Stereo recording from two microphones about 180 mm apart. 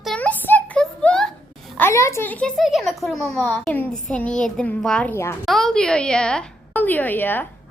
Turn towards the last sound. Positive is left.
turn(degrees=10)  # may be behind; listen again after turning